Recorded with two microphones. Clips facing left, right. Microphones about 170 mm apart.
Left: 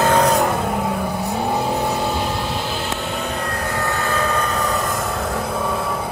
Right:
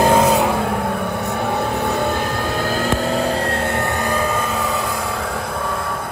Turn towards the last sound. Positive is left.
turn(degrees=-15)  # may be behind; listen again after turning